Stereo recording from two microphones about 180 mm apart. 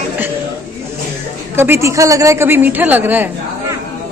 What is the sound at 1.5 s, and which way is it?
A woman's voice, 15° right (ahead or behind).